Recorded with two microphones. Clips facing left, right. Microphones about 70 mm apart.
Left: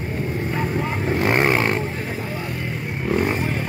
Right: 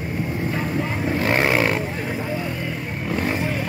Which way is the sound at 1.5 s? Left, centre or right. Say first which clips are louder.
Even; left.